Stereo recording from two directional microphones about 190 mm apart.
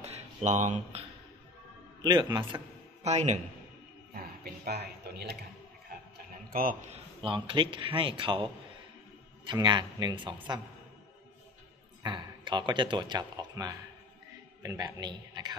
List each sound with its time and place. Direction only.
0.0 s a sound: 40° right (ahead or behind)
2.0 s a man's voice: 20° right (ahead or behind)
3.0 s a man's voice: 35° right (ahead or behind)
4.6 s speech: 60° right (ahead or behind)
6.5 s a man's voice: 45° right (ahead or behind)
7.2 s a man's voice: 25° right (ahead or behind)
9.5 s a man's voice: 25° right (ahead or behind)
12.0 s a man's voice: 25° right (ahead or behind)